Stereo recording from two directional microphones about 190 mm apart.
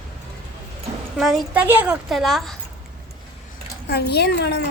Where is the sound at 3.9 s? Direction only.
60° left (ahead or behind).